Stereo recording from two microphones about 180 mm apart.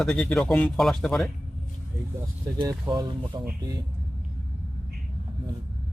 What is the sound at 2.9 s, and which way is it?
Speech, 25° right (ahead or behind).